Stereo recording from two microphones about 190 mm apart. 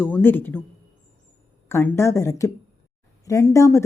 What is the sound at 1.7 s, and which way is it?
A woman's voice, 15° left (ahead or behind).